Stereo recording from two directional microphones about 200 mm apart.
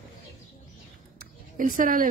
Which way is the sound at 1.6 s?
40° right (ahead or behind).